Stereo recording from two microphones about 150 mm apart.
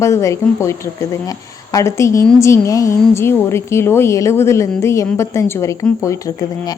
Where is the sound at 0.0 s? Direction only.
20° left (ahead or behind).